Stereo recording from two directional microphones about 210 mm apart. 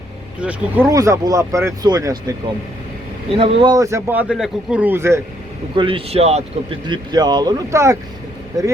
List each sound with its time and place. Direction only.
0.3 s speech: 10° right (ahead or behind)
3.3 s speech: 25° right (ahead or behind)
5.7 s speech: 25° right (ahead or behind)